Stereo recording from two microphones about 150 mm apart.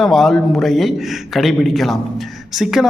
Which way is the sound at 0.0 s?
Centre (ahead or behind).